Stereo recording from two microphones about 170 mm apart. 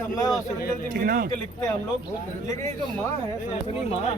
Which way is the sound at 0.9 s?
55° right (ahead or behind).